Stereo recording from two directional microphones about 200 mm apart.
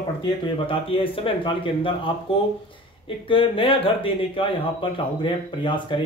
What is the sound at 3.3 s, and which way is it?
Speech, 25° left (ahead or behind).